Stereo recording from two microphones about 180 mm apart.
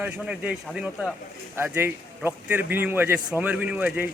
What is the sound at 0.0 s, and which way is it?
Speech, 5° right (ahead or behind).